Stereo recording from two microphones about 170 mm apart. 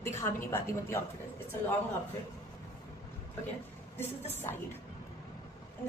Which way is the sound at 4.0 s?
15° left (ahead or behind).